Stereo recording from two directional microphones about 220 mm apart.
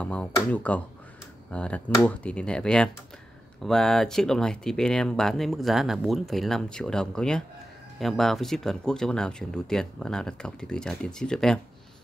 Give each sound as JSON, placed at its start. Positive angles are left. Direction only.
{"t": 0.0, "sound": "speech", "side_deg": 5}